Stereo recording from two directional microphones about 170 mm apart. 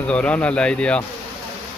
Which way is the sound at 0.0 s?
5° left (ahead or behind).